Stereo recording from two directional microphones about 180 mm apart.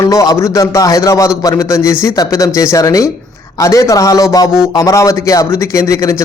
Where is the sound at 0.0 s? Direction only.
20° left (ahead or behind).